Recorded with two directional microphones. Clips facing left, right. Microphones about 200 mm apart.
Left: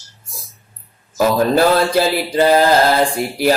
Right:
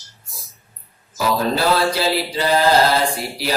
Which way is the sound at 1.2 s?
50° left (ahead or behind).